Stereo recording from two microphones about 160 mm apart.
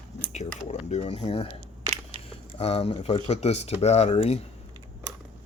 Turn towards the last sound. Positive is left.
turn(degrees=40)  # may be behind; listen again after turning